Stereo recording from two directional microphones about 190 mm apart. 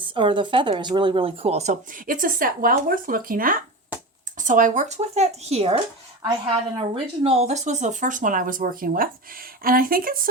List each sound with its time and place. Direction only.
0.0 s speech: 25° right (ahead or behind); by 10.2 s 50° right (ahead or behind)